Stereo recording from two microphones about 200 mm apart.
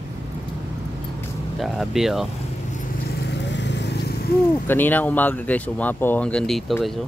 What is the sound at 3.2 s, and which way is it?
Vehicle, 60° left (ahead or behind).